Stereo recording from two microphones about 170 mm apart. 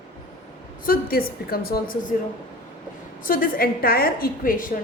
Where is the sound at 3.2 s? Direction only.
55° left (ahead or behind).